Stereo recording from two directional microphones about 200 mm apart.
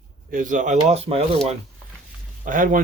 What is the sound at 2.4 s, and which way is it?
Speech, 40° right (ahead or behind).